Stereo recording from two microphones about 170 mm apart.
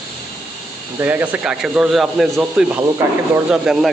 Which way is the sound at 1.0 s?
10° right (ahead or behind).